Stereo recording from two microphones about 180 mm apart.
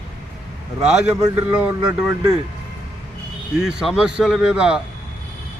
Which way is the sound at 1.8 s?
20° right (ahead or behind).